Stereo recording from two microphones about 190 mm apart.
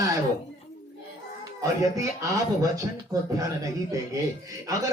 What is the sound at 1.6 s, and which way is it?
Speech, 15° right (ahead or behind).